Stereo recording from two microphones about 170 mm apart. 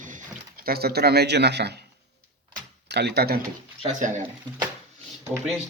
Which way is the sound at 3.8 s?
45° right (ahead or behind).